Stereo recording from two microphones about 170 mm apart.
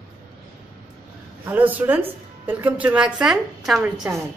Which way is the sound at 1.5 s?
10° right (ahead or behind).